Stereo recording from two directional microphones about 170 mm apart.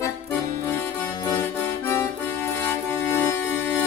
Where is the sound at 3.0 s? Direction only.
15° left (ahead or behind).